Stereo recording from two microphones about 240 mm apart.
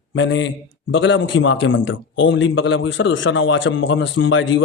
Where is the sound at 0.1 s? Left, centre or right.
Left.